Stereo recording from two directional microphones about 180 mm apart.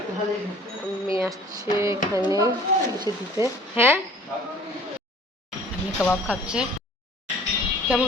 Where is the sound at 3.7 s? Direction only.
10° right (ahead or behind).